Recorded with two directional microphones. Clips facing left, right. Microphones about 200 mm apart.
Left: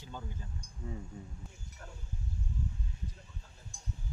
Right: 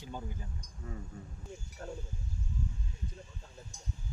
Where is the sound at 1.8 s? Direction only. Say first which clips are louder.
Right 10 dB; 30° right (ahead or behind).